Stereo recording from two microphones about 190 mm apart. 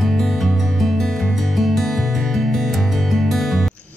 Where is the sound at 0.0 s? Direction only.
Centre (ahead or behind).